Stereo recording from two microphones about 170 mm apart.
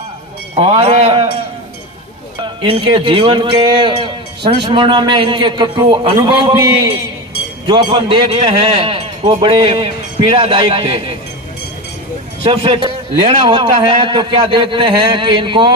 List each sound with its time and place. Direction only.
0.6 s a man's voice: 35° right (ahead or behind)
2.4 s a man's voice: 30° right (ahead or behind)
7.6 s a man's voice: 30° right (ahead or behind)
12.4 s a man's voice: 30° right (ahead or behind)